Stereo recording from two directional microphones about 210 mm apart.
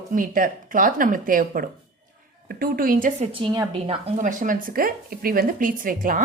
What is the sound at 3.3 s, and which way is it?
A woman's voice, 25° right (ahead or behind).